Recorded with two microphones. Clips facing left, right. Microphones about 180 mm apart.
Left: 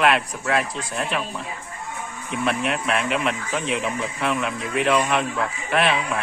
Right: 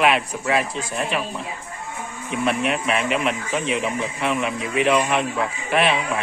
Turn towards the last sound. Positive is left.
turn(degrees=0)  # may be behind; listen again after turning